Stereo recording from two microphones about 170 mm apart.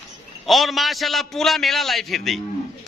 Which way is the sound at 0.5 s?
Centre (ahead or behind).